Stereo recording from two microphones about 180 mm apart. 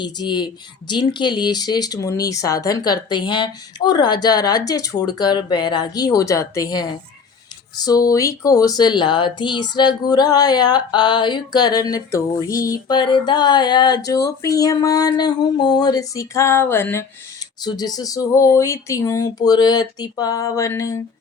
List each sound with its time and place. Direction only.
0.0 s speech: 25° left (ahead or behind)